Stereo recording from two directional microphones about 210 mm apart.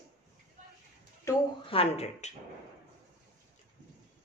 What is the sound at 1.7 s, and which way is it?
Speech, 30° left (ahead or behind).